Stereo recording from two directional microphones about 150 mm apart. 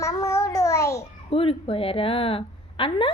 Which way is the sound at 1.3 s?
40° left (ahead or behind).